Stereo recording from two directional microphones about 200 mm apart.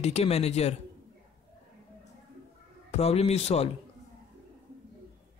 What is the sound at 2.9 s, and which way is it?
Speech, 30° left (ahead or behind).